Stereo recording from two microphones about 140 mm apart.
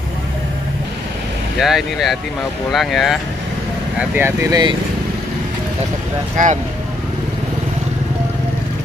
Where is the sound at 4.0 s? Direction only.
15° right (ahead or behind).